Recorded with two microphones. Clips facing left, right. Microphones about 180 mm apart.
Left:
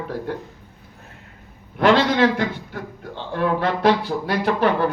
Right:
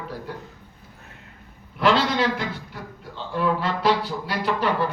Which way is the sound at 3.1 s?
55° left (ahead or behind).